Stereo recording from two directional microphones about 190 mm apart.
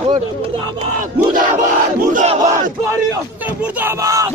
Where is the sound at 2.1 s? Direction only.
35° right (ahead or behind).